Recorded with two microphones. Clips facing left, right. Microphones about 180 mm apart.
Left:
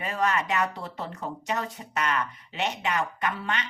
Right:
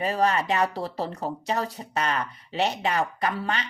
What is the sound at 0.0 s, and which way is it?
Speech, 35° right (ahead or behind).